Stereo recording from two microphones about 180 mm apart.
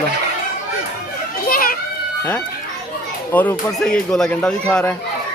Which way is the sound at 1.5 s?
55° left (ahead or behind).